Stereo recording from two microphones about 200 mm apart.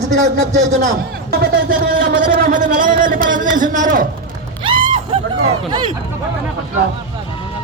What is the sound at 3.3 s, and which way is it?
Speech, 45° right (ahead or behind).